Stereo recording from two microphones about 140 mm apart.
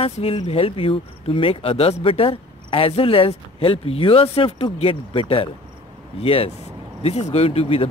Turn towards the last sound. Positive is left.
turn(degrees=45)  # may be behind; listen again after turning